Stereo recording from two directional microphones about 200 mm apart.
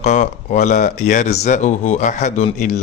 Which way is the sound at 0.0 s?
40° left (ahead or behind).